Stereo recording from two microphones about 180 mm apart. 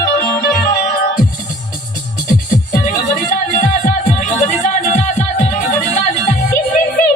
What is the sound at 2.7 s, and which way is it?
Music, 50° left (ahead or behind).